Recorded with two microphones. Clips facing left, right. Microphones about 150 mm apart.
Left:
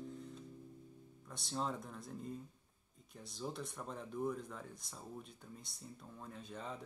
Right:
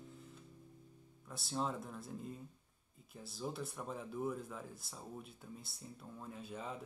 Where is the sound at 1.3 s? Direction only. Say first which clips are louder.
Right 1 dB; 5° right (ahead or behind).